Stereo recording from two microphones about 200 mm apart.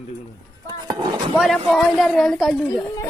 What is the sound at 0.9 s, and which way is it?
Speech, 20° right (ahead or behind).